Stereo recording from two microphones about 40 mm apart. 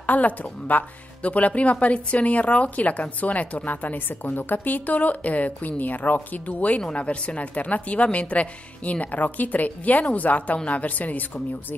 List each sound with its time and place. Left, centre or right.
0.0 s speech: left